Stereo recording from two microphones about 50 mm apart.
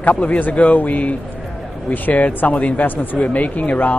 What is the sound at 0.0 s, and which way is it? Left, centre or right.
Speech, left.